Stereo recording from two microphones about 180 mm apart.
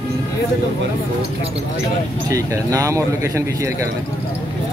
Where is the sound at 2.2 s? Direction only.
20° right (ahead or behind).